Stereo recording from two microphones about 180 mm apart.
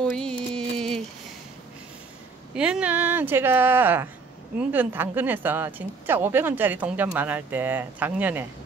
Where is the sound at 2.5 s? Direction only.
5° right (ahead or behind).